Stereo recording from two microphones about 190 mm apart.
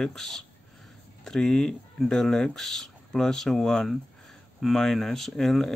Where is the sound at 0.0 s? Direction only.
Centre (ahead or behind).